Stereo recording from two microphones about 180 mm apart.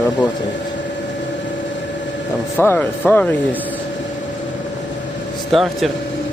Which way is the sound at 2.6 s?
10° left (ahead or behind).